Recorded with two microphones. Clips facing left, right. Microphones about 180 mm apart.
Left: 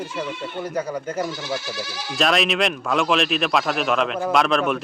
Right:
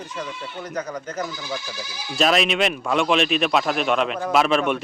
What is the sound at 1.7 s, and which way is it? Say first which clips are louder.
Speech: left 4 dB; 90° left.